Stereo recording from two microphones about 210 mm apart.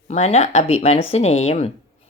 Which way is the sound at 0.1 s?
30° left (ahead or behind).